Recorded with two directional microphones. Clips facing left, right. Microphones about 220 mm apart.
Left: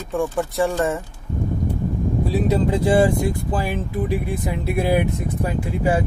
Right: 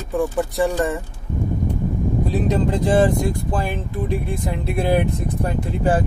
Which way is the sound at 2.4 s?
10° left (ahead or behind).